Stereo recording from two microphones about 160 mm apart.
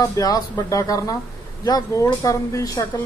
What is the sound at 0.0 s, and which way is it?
Speech, 25° left (ahead or behind).